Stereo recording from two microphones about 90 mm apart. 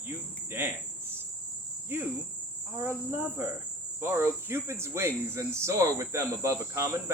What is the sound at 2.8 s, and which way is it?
Cricket, 25° right (ahead or behind).